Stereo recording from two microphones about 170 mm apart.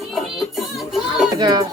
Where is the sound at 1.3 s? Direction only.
25° right (ahead or behind).